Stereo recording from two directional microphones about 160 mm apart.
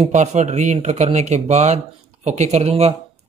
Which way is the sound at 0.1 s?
45° right (ahead or behind).